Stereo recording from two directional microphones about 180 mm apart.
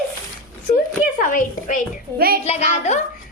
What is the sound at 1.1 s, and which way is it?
Speech, 45° left (ahead or behind).